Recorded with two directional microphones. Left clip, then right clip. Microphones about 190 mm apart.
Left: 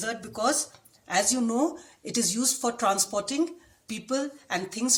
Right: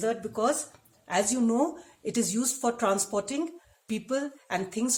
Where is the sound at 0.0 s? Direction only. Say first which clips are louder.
Right 1 dB; 40° right (ahead or behind).